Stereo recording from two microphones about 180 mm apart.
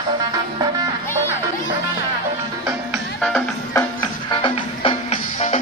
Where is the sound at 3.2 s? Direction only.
5° left (ahead or behind).